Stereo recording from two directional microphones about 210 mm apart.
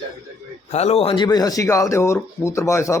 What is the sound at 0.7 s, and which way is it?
Speech, 30° left (ahead or behind).